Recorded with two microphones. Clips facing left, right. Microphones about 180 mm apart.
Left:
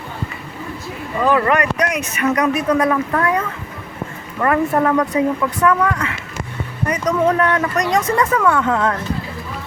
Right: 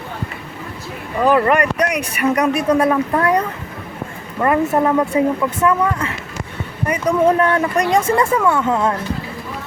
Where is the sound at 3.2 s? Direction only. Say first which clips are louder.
Right 2 dB; 35° right (ahead or behind).